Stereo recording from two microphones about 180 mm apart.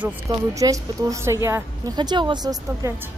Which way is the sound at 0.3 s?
20° right (ahead or behind).